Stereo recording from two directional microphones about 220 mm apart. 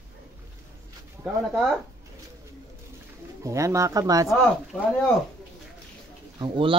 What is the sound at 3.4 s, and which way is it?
Speech, 15° right (ahead or behind).